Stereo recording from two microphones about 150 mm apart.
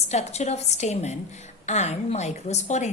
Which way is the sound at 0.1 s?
45° left (ahead or behind).